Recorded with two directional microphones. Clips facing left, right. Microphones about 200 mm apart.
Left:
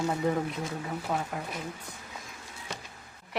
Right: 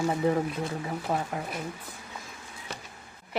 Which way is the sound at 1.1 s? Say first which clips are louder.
Right 2 dB; 30° right (ahead or behind).